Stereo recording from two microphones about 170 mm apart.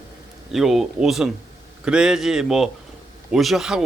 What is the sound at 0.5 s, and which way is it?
A man's voice, centre (ahead or behind).